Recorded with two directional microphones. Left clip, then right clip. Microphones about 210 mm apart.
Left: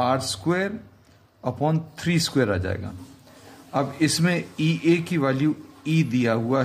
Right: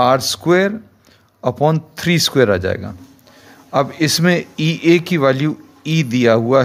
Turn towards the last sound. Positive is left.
turn(degrees=-45)  # may be behind; listen again after turning